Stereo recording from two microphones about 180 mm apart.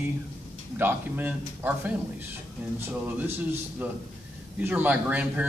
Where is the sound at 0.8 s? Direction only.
10° right (ahead or behind).